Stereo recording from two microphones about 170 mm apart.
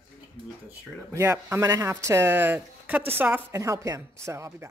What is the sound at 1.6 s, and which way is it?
Speech, 20° right (ahead or behind).